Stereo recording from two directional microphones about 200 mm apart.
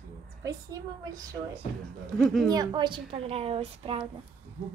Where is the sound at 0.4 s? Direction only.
15° right (ahead or behind).